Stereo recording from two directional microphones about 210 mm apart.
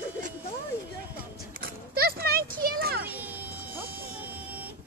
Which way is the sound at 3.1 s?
10° right (ahead or behind).